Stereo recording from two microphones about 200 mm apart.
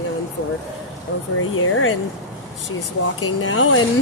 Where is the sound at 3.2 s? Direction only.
75° left (ahead or behind).